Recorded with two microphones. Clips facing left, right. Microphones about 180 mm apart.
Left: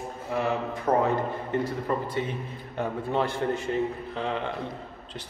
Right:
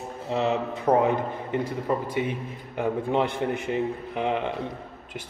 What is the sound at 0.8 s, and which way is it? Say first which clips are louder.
A man's voice: right 2 dB; 15° right (ahead or behind).